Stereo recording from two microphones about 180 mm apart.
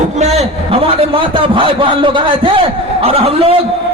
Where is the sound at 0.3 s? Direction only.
30° right (ahead or behind).